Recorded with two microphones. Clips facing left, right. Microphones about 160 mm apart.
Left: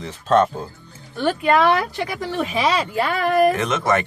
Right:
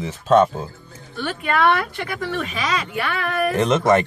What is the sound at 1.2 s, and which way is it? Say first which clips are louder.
Speech: left 3 dB; 35° left (ahead or behind).